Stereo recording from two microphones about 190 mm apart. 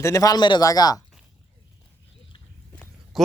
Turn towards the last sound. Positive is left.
turn(degrees=0)  # may be behind; listen again after turning